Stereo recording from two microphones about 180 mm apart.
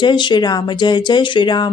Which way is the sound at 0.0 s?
25° left (ahead or behind).